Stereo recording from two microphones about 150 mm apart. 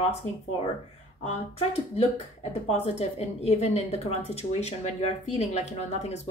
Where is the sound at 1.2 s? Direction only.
45° left (ahead or behind).